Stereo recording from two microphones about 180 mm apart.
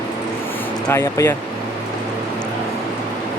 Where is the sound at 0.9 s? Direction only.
15° left (ahead or behind).